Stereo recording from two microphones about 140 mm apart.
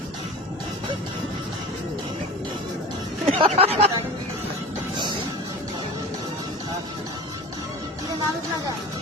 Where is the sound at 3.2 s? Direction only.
40° right (ahead or behind).